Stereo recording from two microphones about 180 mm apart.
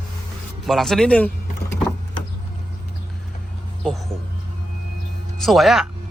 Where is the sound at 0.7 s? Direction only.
Centre (ahead or behind).